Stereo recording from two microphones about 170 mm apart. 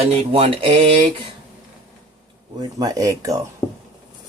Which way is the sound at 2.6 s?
20° right (ahead or behind).